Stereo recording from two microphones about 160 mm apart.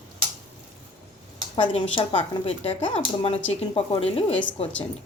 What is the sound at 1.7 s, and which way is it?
A woman's voice, 35° left (ahead or behind).